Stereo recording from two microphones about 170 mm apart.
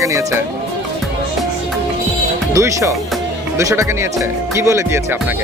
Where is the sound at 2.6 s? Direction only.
15° right (ahead or behind).